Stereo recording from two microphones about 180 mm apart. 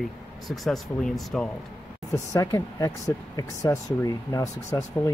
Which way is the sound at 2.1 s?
20° left (ahead or behind).